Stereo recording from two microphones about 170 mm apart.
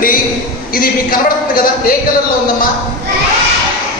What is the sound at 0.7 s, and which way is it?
A woman's voice, 60° left (ahead or behind).